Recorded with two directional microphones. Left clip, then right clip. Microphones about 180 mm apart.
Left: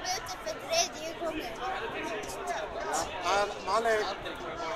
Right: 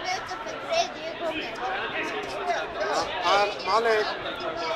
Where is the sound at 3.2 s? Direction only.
35° left (ahead or behind).